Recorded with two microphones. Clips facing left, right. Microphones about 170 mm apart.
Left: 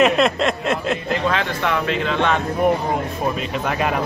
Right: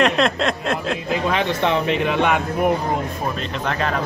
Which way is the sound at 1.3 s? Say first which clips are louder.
Right 2 dB; 20° right (ahead or behind).